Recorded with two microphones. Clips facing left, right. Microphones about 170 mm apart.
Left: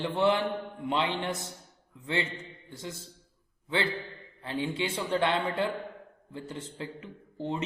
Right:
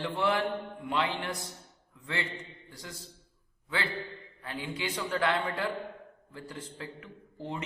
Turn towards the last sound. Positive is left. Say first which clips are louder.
# left 5 dB
turn(degrees=25)  # may be behind; listen again after turning